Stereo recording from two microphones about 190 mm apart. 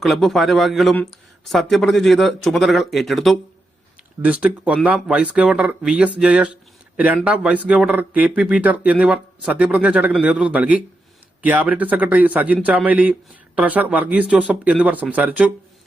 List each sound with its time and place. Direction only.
0.0 s speech: centre (ahead or behind)